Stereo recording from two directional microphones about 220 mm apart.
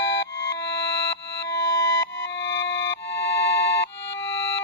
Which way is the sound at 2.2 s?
55° left (ahead or behind).